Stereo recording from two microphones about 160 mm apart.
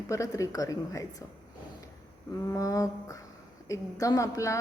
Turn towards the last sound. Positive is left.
turn(degrees=20)  # may be behind; listen again after turning